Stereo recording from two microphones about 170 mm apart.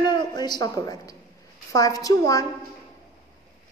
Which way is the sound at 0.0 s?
25° left (ahead or behind).